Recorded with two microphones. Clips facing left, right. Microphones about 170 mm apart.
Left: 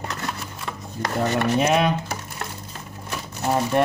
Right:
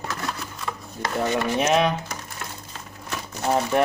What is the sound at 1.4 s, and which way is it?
Speech, 65° left (ahead or behind).